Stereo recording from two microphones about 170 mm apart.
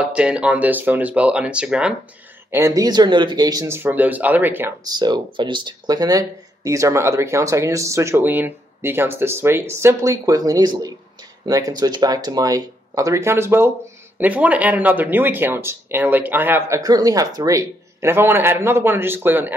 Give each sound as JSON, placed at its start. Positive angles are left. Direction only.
{"t": 0.0, "sound": "speech", "side_deg": -5}
{"t": 2.5, "sound": "speech", "side_deg": -20}